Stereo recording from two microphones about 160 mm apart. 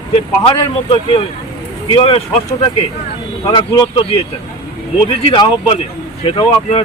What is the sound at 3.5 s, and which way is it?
A man's voice, 30° left (ahead or behind).